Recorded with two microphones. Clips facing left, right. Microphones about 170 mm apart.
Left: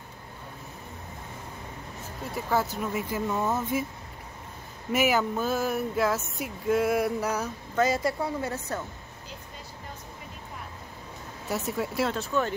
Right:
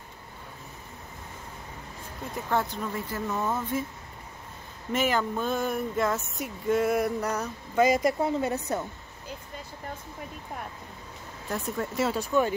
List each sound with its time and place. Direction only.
2.3 s speech: 5° left (ahead or behind)
4.9 s speech: 10° left (ahead or behind)
7.7 s a woman's voice: 15° right (ahead or behind)
11.4 s speech: 5° left (ahead or behind)
12.2 s a woman's voice: 15° right (ahead or behind)